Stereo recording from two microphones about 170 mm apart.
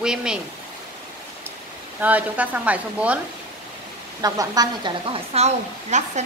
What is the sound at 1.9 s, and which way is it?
Speech, 10° right (ahead or behind).